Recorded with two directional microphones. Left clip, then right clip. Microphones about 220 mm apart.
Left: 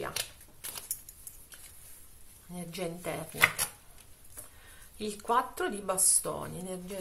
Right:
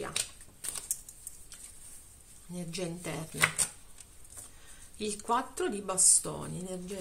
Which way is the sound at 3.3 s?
20° right (ahead or behind).